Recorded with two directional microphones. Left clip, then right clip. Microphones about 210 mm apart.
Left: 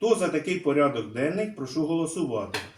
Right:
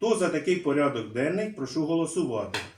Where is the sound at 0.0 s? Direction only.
Centre (ahead or behind).